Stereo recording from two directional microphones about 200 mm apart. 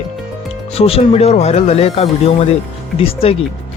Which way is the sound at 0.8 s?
30° left (ahead or behind).